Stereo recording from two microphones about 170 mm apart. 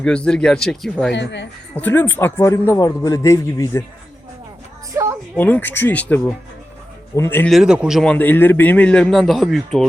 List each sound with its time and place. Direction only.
0.0 s speech: 5° left (ahead or behind)
1.1 s speech: 90° left
1.7 s a man's voice: 10° left (ahead or behind)
5.4 s a man's voice: 10° left (ahead or behind)
7.5 s speech: 5° right (ahead or behind)
8.1 s a man's voice: 10° left (ahead or behind)